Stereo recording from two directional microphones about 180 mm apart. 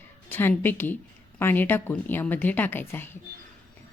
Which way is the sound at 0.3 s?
10° left (ahead or behind).